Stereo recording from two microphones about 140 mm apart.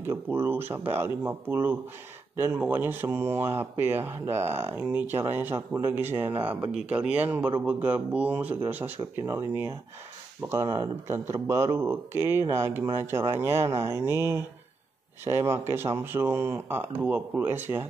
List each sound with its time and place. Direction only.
0.1 s speech: 15° right (ahead or behind)
10.5 s speech: 20° right (ahead or behind)